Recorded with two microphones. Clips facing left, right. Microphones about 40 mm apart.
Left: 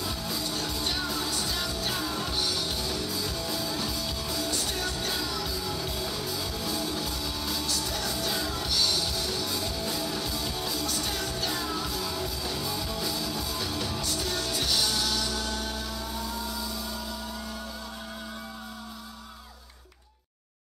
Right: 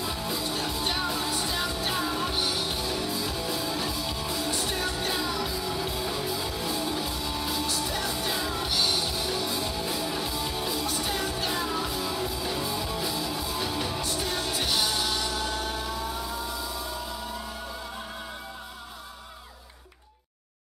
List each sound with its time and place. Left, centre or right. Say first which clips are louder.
0.0 s music: right 2 dB; centre